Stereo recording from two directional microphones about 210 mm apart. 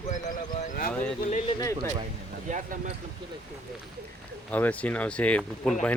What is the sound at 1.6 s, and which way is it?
Speech, 15° left (ahead or behind).